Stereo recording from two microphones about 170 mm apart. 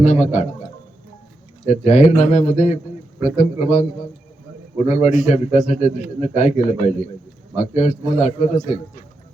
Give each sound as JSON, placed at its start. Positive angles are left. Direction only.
{"t": 0.0, "sound": "a man's voice", "side_deg": 40}
{"t": 1.6, "sound": "a man's voice", "side_deg": 40}
{"t": 4.9, "sound": "a man's voice", "side_deg": 40}